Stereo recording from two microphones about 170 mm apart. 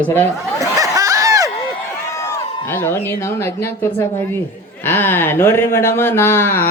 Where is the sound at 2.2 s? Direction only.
15° left (ahead or behind).